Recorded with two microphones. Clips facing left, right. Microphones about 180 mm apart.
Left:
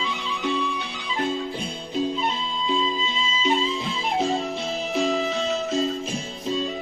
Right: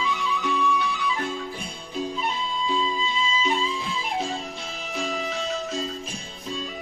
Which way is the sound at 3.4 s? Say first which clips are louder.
Left 3 dB; 25° left (ahead or behind).